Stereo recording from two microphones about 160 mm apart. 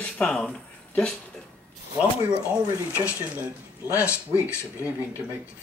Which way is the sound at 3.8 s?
20° left (ahead or behind).